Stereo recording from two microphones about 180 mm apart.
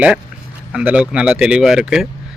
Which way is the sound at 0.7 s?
5° right (ahead or behind).